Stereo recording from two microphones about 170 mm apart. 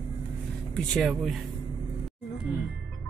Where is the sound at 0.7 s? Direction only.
Centre (ahead or behind).